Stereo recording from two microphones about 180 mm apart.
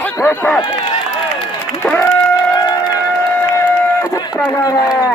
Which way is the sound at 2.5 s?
20° left (ahead or behind).